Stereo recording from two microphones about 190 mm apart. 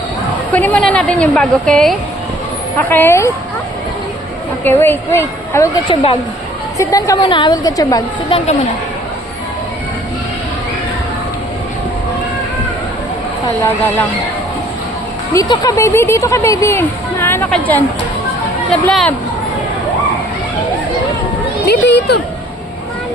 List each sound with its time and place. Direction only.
0.5 s a woman's voice: 10° left (ahead or behind)
4.6 s speech: 10° left (ahead or behind)
5.9 s a woman's voice: 30° left (ahead or behind)
6.7 s a woman's voice: 15° left (ahead or behind)
15.3 s a woman's voice: 20° left (ahead or behind)
21.7 s speech: 60° left (ahead or behind)